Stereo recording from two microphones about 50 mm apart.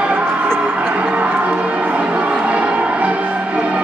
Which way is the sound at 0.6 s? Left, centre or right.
Right.